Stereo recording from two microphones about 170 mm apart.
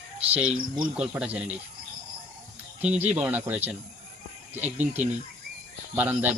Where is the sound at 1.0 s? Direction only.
5° right (ahead or behind).